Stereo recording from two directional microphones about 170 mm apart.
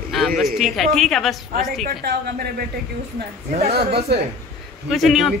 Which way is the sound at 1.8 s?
70° right (ahead or behind).